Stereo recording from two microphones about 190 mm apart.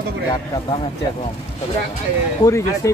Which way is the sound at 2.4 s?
15° left (ahead or behind).